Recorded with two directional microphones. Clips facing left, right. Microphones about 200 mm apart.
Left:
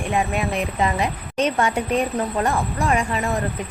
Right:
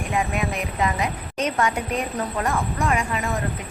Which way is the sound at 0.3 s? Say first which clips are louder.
Left 3 dB; 30° left (ahead or behind).